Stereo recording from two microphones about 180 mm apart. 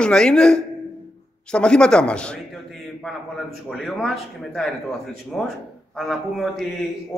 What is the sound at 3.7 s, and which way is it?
A man's voice, centre (ahead or behind).